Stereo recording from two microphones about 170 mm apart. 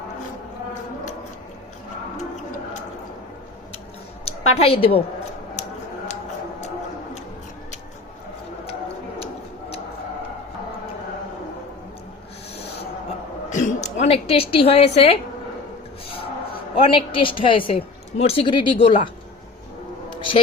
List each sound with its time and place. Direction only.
4.3 s a woman's voice: 35° left (ahead or behind)
9.1 s tick-tock: 35° left (ahead or behind)
13.5 s a sound: 45° left (ahead or behind)
16.7 s a woman's voice: 30° left (ahead or behind)